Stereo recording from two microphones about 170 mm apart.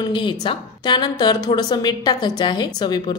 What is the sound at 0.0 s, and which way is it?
A woman's voice, 25° left (ahead or behind).